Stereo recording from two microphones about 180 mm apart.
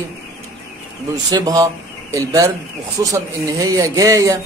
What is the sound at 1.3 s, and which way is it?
Speech, 20° right (ahead or behind).